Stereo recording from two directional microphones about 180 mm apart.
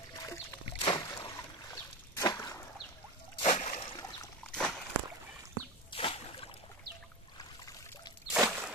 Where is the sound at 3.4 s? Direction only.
40° left (ahead or behind).